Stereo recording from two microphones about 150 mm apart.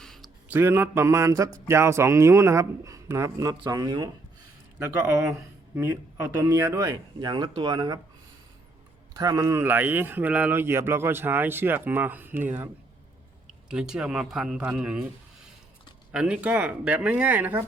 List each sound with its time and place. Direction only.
0.0 s a sound: centre (ahead or behind)
0.4 s speech: 15° right (ahead or behind)
4.8 s speech: 15° right (ahead or behind)
6.4 s speech: 20° right (ahead or behind)
9.1 s a man's voice: 25° right (ahead or behind); by 15.1 s 5° right (ahead or behind)
16.1 s speech: 5° right (ahead or behind)